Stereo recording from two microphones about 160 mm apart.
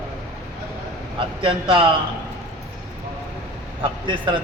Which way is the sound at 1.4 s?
30° right (ahead or behind).